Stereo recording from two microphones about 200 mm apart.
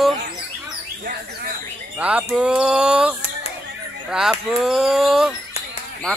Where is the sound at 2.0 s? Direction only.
5° right (ahead or behind).